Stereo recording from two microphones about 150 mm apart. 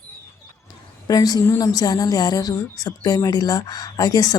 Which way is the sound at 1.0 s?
25° left (ahead or behind).